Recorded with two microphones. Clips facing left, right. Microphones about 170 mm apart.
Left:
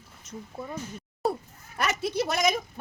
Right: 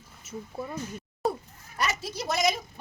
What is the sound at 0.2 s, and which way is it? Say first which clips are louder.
Speech: right 2 dB; 5° right (ahead or behind).